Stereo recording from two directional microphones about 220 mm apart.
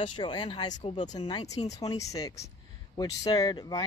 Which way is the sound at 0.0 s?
20° left (ahead or behind).